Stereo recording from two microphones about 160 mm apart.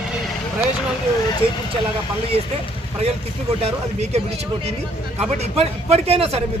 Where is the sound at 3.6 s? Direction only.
40° right (ahead or behind).